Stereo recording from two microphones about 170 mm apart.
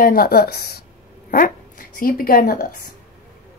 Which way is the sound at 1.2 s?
55° left (ahead or behind).